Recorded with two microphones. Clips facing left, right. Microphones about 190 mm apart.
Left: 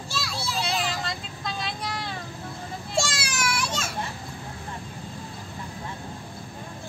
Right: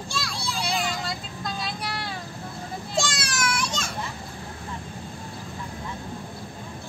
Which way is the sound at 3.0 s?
5° left (ahead or behind).